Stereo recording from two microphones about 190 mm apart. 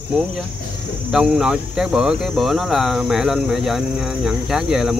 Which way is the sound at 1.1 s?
Centre (ahead or behind).